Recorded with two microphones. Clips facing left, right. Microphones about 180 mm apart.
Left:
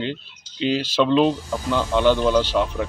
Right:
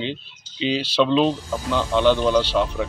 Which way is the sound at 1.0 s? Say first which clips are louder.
Left 4 dB; 5° left (ahead or behind).